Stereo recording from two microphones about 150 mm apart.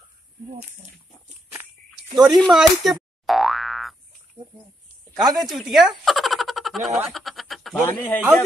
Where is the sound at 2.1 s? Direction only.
Centre (ahead or behind).